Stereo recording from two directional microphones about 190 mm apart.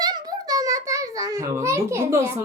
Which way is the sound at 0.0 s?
20° right (ahead or behind).